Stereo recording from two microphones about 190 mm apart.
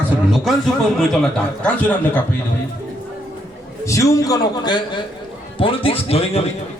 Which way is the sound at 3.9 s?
15° left (ahead or behind).